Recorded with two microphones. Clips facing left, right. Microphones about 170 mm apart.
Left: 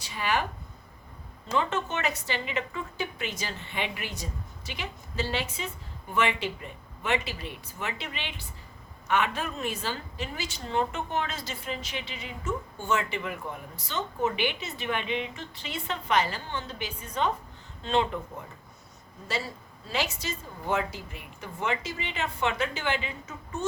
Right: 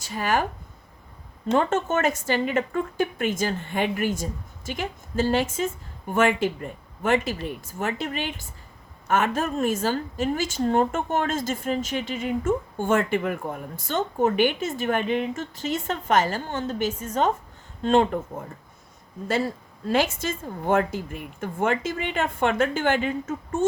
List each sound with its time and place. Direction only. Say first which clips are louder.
0.0 s speech: right 5 dB; 45° right (ahead or behind)
1.5 s a woman's voice: right 6 dB; 45° right (ahead or behind)
19.9 s a woman's voice: right 8 dB; 50° right (ahead or behind)